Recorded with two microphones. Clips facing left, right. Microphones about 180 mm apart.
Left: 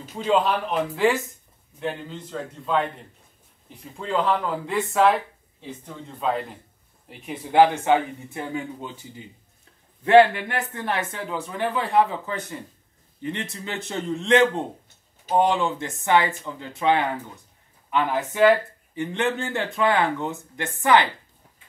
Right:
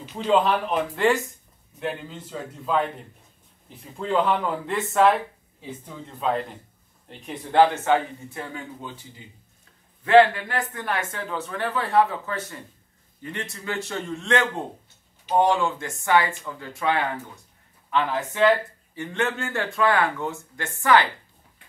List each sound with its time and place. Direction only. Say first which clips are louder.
0.2 s speech: right 1 dB; centre (ahead or behind); by 8.6 s 20° left (ahead or behind)
10.0 s speech: left 1 dB; 25° left (ahead or behind)